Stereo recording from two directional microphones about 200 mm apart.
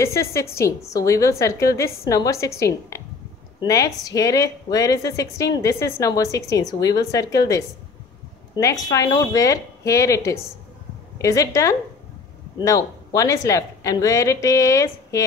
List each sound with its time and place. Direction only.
0.0 s a woman's voice: 15° left (ahead or behind)
8.5 s a woman's voice: 15° left (ahead or behind)